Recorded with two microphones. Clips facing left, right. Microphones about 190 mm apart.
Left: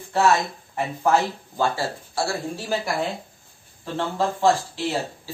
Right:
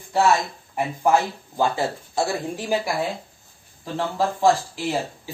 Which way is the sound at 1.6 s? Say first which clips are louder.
Right 2 dB; 20° right (ahead or behind).